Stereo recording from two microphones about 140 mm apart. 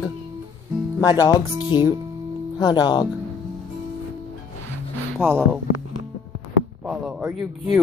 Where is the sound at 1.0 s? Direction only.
25° left (ahead or behind).